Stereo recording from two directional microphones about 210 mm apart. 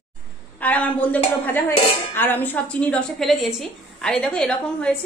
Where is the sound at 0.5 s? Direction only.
5° left (ahead or behind).